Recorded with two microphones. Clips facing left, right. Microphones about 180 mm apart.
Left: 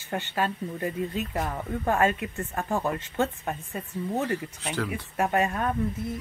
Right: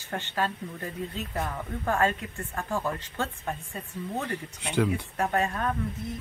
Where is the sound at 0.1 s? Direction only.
15° left (ahead or behind).